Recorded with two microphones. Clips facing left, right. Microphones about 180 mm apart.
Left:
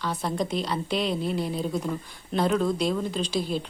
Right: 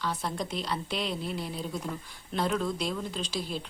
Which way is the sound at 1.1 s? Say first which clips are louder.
Left 7 dB; 40° left (ahead or behind).